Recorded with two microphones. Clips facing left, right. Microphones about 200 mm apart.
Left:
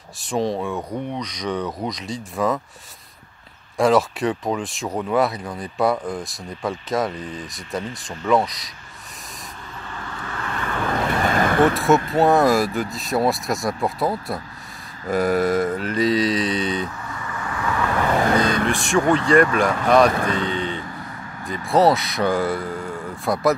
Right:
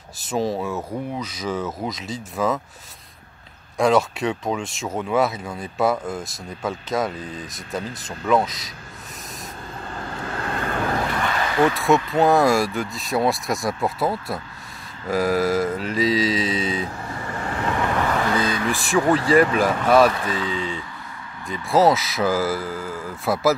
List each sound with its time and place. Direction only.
0.2 s speech: centre (ahead or behind)
3.7 s speech: centre (ahead or behind)
9.8 s vehicle: 35° right (ahead or behind)
11.2 s a sound: 50° left (ahead or behind)
11.7 s speech: centre (ahead or behind)
16.8 s vehicle: 35° right (ahead or behind)
18.3 s vehicle: 50° left (ahead or behind)
18.7 s speech: centre (ahead or behind)
20.2 s speech: 50° left (ahead or behind)
21.5 s speech: centre (ahead or behind)